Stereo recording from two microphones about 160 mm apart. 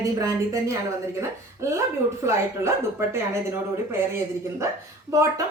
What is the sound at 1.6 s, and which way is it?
Speech, 15° right (ahead or behind).